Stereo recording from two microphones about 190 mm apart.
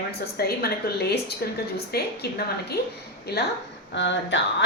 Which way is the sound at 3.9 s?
70° left (ahead or behind).